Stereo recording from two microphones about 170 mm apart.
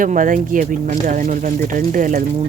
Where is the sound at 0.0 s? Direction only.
50° right (ahead or behind).